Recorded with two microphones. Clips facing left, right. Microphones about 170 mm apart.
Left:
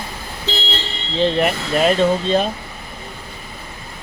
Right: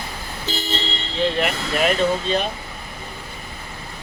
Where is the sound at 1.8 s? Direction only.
35° left (ahead or behind).